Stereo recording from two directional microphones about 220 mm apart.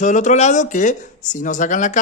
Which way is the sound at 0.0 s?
35° left (ahead or behind).